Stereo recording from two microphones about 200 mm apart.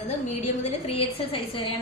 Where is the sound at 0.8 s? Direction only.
30° left (ahead or behind).